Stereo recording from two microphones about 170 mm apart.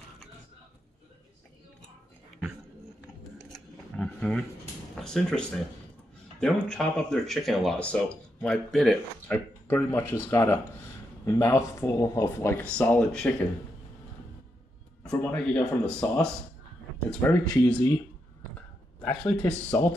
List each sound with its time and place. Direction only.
3.4 s a sound: 5° left (ahead or behind)
4.9 s speech: 5° left (ahead or behind)
15.3 s a man's voice: 10° left (ahead or behind)